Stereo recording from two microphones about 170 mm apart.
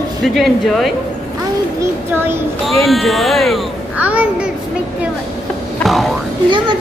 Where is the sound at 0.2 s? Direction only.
Centre (ahead or behind).